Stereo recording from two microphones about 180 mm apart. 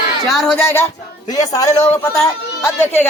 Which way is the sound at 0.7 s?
15° left (ahead or behind).